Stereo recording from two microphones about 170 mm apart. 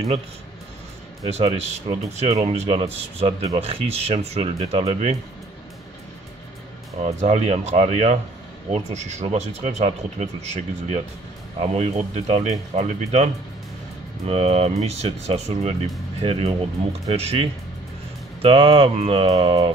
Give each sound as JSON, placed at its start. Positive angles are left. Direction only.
{"t": 1.2, "sound": "a man's voice", "side_deg": -35}
{"t": 7.1, "sound": "a man's voice", "side_deg": -40}